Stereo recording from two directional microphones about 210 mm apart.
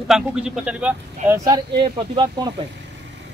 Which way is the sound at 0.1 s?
5° right (ahead or behind).